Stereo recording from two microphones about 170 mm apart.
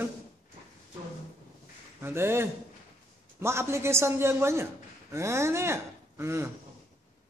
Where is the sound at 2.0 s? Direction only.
15° right (ahead or behind).